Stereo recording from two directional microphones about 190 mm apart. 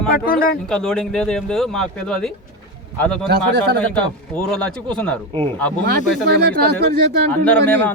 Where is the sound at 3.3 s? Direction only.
60° right (ahead or behind).